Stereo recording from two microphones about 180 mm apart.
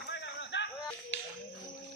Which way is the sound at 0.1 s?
85° left.